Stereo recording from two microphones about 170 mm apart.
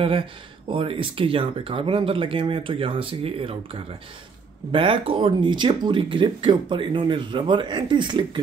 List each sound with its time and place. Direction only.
0.7 s speech: 30° right (ahead or behind)